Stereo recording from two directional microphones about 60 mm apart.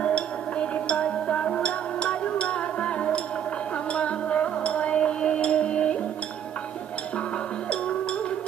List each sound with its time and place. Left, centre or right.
0.0 s music: centre